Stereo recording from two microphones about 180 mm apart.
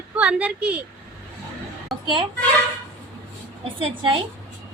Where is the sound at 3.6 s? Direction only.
30° right (ahead or behind).